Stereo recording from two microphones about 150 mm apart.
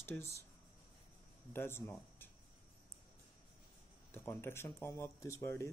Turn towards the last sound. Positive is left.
turn(degrees=20)  # may be behind; listen again after turning